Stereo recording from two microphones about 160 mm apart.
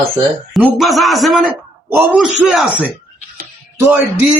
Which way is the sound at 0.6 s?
Centre (ahead or behind).